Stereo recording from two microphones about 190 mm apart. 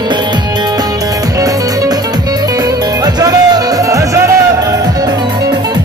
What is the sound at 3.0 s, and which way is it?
Music, 20° right (ahead or behind).